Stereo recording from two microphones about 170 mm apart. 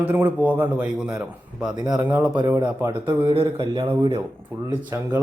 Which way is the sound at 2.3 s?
25° right (ahead or behind).